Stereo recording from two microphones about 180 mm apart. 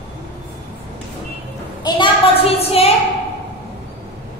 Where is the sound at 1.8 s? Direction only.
30° left (ahead or behind).